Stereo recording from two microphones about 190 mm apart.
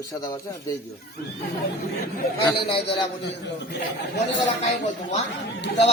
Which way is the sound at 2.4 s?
25° left (ahead or behind).